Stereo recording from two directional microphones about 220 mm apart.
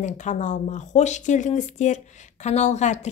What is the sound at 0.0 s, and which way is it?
A woman's voice, 35° left (ahead or behind).